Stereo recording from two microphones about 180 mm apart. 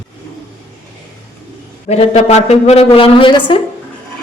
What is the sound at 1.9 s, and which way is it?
A woman's voice, 40° left (ahead or behind).